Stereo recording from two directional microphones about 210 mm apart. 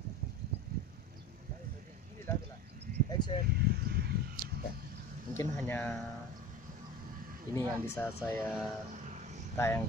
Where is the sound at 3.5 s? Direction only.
50° right (ahead or behind).